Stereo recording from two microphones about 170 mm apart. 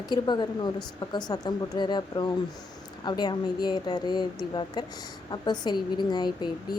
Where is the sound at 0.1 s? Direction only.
25° left (ahead or behind).